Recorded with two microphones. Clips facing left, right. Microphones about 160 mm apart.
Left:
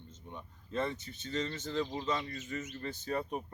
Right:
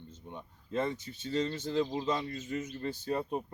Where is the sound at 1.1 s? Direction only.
35° right (ahead or behind).